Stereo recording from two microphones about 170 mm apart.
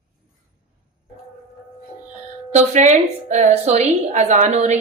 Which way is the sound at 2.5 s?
45° right (ahead or behind).